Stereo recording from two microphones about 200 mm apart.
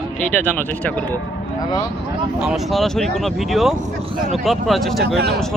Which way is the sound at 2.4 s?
Centre (ahead or behind).